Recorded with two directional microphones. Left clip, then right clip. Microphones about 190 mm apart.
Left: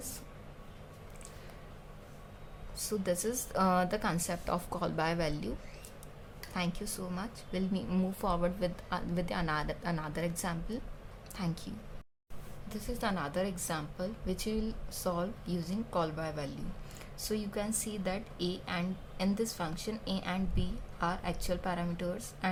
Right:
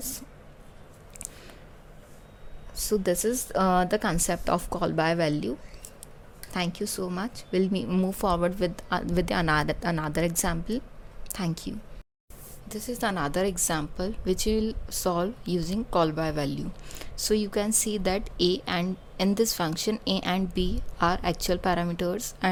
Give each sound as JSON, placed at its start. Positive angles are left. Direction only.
{"t": 2.7, "sound": "a woman's voice", "side_deg": -35}
{"t": 7.9, "sound": "a woman's voice", "side_deg": -25}
{"t": 8.3, "sound": "a woman's voice", "side_deg": -35}